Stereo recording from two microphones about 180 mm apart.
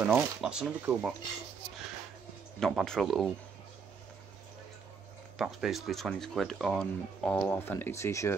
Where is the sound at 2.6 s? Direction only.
5° left (ahead or behind).